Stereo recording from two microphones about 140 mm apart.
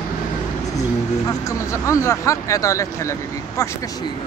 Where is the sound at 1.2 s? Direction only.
20° left (ahead or behind).